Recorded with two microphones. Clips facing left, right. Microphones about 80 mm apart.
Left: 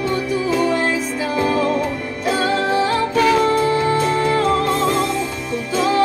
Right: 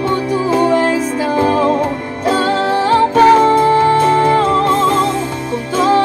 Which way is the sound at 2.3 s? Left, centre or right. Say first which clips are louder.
Right 4 dB; right.